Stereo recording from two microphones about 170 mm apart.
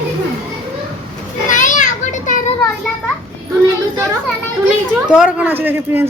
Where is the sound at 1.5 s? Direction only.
50° left (ahead or behind).